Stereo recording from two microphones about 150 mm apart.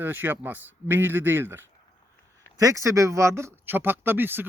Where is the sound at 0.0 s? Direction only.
15° right (ahead or behind).